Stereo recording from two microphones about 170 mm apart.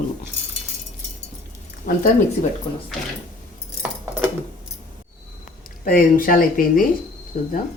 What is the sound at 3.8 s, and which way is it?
Keys jangling, 10° right (ahead or behind).